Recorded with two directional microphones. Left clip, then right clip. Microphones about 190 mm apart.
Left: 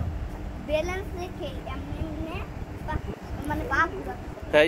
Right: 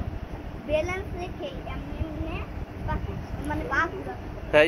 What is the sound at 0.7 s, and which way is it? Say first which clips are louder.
Speech: right 1 dB; 5° left (ahead or behind).